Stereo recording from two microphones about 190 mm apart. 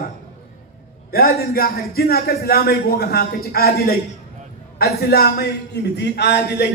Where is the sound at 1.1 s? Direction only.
50° left (ahead or behind).